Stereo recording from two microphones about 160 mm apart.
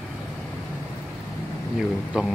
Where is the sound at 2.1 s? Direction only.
5° right (ahead or behind).